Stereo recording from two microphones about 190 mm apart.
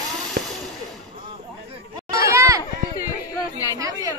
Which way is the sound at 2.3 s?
15° right (ahead or behind).